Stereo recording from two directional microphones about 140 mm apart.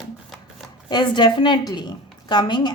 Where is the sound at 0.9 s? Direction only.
35° left (ahead or behind).